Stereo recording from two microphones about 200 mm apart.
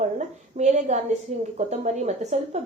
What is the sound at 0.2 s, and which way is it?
A woman's voice, 35° right (ahead or behind).